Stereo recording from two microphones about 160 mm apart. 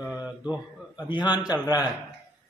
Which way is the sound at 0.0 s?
10° right (ahead or behind).